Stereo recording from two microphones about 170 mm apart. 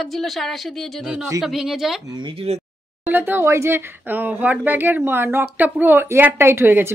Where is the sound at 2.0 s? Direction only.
25° right (ahead or behind).